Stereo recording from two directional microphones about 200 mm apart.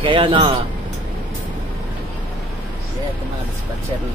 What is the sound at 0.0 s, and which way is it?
Speech, 25° right (ahead or behind).